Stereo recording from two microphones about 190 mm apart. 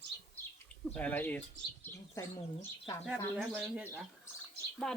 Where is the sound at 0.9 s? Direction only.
10° left (ahead or behind).